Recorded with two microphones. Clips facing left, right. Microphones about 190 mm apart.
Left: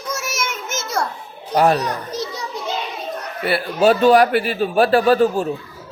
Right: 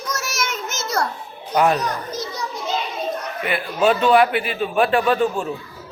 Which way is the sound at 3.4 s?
40° left (ahead or behind).